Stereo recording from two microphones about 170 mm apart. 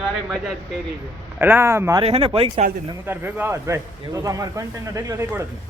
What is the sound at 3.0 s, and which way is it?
Speech, 10° right (ahead or behind).